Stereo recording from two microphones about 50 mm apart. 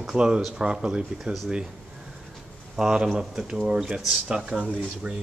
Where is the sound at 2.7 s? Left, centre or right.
Centre.